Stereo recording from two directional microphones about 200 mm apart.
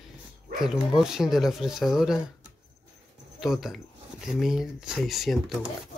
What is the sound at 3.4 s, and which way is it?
Speech, centre (ahead or behind).